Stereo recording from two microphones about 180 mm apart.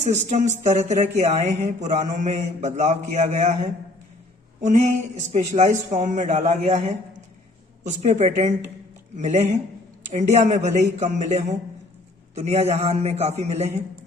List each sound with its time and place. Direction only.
0.0 s a man's voice: 40° right (ahead or behind)